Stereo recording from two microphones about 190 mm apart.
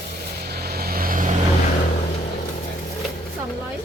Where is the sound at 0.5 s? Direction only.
55° right (ahead or behind).